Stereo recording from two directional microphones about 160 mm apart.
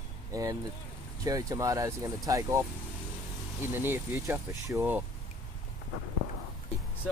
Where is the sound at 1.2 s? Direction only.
20° right (ahead or behind).